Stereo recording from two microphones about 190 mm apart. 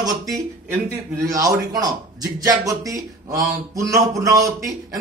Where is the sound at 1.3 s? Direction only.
20° right (ahead or behind).